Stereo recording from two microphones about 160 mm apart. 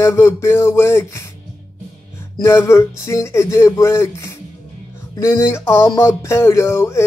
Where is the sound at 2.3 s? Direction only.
15° left (ahead or behind).